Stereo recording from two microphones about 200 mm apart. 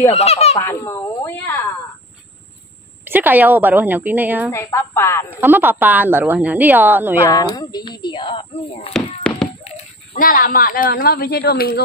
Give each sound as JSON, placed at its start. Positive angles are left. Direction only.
{"t": 0.1, "sound": "speech", "side_deg": 30}
{"t": 0.6, "sound": "speech", "side_deg": 15}
{"t": 3.1, "sound": "a woman's voice", "side_deg": -10}
{"t": 4.5, "sound": "speech", "side_deg": 15}
{"t": 5.4, "sound": "a woman's voice", "side_deg": -10}
{"t": 7.2, "sound": "speech", "side_deg": 20}
{"t": 8.9, "sound": "a sound", "side_deg": 5}
{"t": 9.7, "sound": "speech", "side_deg": 45}